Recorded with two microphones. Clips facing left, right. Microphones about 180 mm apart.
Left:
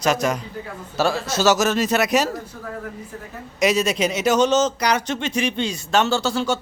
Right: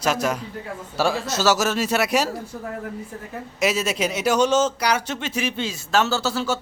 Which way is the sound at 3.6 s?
5° right (ahead or behind).